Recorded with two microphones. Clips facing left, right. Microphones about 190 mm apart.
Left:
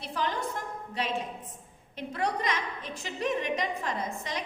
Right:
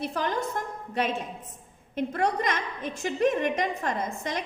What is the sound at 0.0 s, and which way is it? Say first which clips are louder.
A woman's voice: right 3 dB; 50° right (ahead or behind).